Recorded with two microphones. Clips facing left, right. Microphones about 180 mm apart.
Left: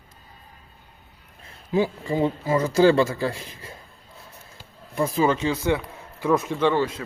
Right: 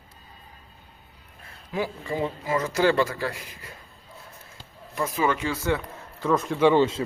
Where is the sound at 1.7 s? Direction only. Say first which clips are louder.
Left 6 dB; 25° left (ahead or behind).